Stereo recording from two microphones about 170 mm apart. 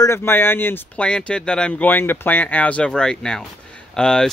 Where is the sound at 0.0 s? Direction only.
15° left (ahead or behind).